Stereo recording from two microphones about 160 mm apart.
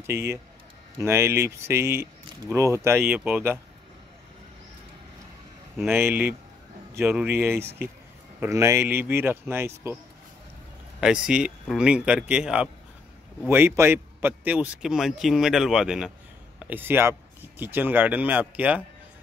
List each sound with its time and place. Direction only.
0.0 s speech: 15° right (ahead or behind)
5.9 s speech: 10° right (ahead or behind)
11.0 s speech: 5° right (ahead or behind)